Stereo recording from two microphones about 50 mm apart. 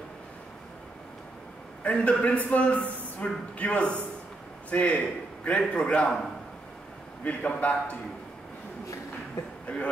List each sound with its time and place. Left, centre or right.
1.8 s a man's voice: left
7.2 s a man's voice: left
9.7 s a sound: left